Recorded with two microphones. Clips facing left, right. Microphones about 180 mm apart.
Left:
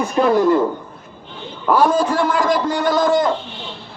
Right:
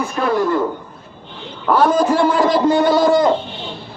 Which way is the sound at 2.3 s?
25° right (ahead or behind).